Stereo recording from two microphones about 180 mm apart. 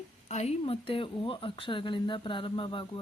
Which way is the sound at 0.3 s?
35° left (ahead or behind).